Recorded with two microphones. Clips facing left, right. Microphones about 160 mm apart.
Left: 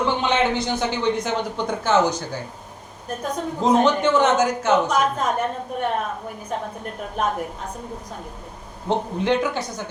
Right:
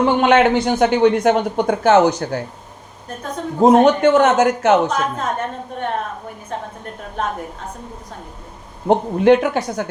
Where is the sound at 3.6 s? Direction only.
55° right (ahead or behind).